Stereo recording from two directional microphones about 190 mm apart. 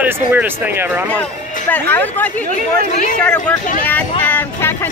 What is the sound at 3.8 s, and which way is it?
Vehicle, 10° left (ahead or behind).